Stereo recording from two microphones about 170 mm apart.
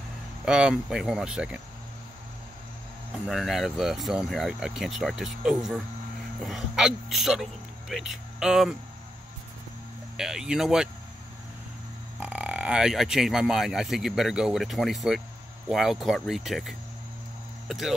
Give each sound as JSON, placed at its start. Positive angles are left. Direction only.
{"t": 0.5, "sound": "speech", "side_deg": -5}
{"t": 3.1, "sound": "speech", "side_deg": 0}
{"t": 10.1, "sound": "speech", "side_deg": -5}
{"t": 12.2, "sound": "speech", "side_deg": -10}